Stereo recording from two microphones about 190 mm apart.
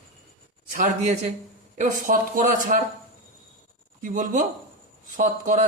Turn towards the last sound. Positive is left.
turn(degrees=-45)  # may be behind; listen again after turning